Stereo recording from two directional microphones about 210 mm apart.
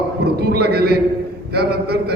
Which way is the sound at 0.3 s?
50° right (ahead or behind).